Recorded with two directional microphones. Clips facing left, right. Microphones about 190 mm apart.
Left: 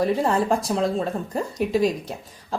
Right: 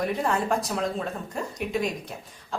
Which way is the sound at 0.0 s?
30° left (ahead or behind).